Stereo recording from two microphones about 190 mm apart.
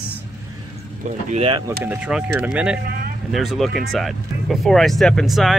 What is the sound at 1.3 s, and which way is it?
Speech, 30° right (ahead or behind).